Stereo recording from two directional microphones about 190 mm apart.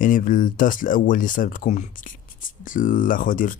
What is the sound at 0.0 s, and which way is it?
Speech, 45° left (ahead or behind).